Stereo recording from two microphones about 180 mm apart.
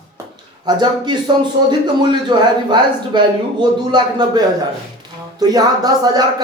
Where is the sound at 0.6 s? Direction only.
25° right (ahead or behind).